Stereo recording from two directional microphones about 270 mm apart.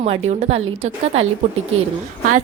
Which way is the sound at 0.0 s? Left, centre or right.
Right.